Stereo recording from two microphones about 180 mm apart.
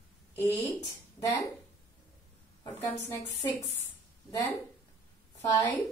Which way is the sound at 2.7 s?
10° left (ahead or behind).